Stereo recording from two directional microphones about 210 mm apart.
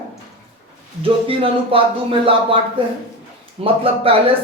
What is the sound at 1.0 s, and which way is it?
Speech, 25° right (ahead or behind).